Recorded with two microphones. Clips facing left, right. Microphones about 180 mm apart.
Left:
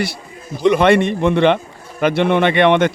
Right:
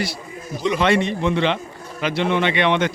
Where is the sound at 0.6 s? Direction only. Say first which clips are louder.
Left 6 dB; 60° left (ahead or behind).